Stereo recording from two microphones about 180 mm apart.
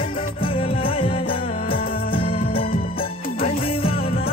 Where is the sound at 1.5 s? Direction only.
55° left (ahead or behind).